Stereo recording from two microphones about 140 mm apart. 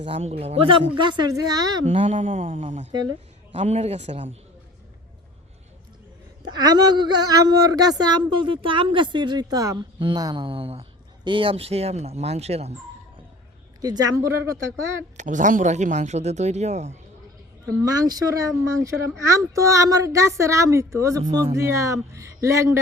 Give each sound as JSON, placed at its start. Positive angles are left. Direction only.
{"t": 0.0, "sound": "speech", "side_deg": -50}
{"t": 1.8, "sound": "speech", "side_deg": -40}
{"t": 2.1, "sound": "speech", "side_deg": -65}
{"t": 3.5, "sound": "speech", "side_deg": -50}
{"t": 6.4, "sound": "speech", "side_deg": -30}
{"t": 13.8, "sound": "a child's voice", "side_deg": -25}
{"t": 15.2, "sound": "speech", "side_deg": -65}
{"t": 17.8, "sound": "a child's voice", "side_deg": -25}